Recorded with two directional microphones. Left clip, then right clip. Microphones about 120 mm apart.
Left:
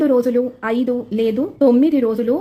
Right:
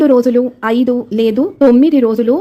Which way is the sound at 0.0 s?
35° right (ahead or behind).